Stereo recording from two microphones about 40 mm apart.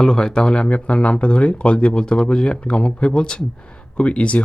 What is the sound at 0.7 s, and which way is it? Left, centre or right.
Speech, left.